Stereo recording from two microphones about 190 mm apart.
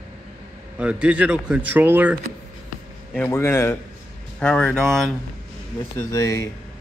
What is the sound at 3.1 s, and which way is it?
Speech, 10° left (ahead or behind).